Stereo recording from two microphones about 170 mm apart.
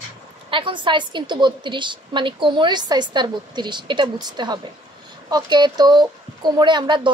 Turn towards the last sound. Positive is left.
turn(degrees=-30)  # may be behind; listen again after turning